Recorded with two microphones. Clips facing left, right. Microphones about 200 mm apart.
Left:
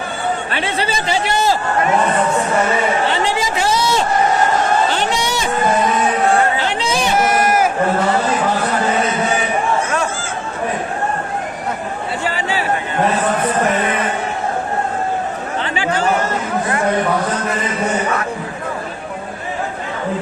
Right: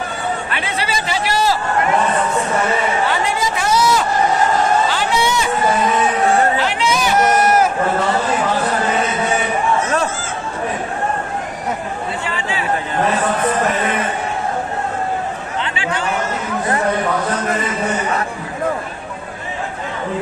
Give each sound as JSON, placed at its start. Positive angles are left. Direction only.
{"t": 0.5, "sound": "speech", "side_deg": 30}
{"t": 3.4, "sound": "a sound", "side_deg": 30}
{"t": 6.6, "sound": "chatter", "side_deg": 35}
{"t": 12.2, "sound": "chatter", "side_deg": 35}
{"t": 15.6, "sound": "chatter", "side_deg": 40}